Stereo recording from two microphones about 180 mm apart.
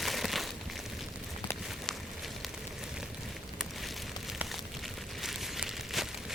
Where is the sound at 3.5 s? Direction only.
Centre (ahead or behind).